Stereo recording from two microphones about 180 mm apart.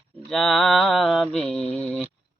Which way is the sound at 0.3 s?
Centre (ahead or behind).